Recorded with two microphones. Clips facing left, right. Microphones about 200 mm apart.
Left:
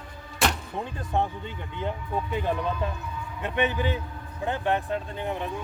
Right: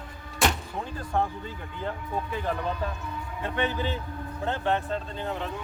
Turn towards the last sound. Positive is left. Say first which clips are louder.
# left 1 dB
turn(degrees=15)  # may be behind; listen again after turning